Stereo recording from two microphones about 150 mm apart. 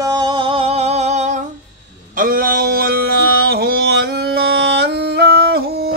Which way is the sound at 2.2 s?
70° right (ahead or behind).